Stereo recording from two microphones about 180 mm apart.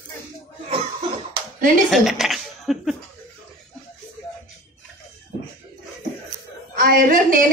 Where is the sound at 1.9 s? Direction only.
Centre (ahead or behind).